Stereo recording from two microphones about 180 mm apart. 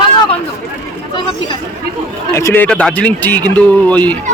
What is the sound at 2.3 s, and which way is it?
A man's voice, 15° left (ahead or behind).